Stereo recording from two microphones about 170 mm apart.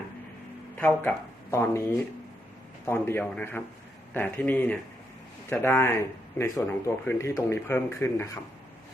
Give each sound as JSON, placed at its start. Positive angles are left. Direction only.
{"t": 0.8, "sound": "speech", "side_deg": 15}